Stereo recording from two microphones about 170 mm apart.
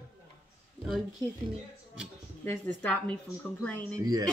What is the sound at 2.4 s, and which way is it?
Speech, 10° left (ahead or behind).